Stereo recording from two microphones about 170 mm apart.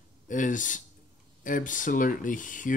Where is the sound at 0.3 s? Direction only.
50° left (ahead or behind).